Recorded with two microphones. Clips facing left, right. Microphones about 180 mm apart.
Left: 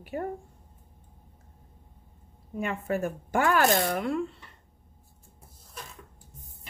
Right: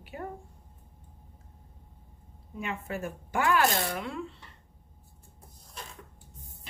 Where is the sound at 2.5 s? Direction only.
50° left (ahead or behind).